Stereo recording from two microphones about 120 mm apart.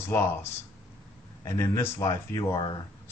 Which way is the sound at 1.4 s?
20° left (ahead or behind).